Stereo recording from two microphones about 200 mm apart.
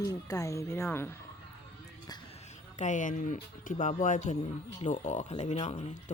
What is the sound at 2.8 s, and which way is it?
Speech, 40° left (ahead or behind).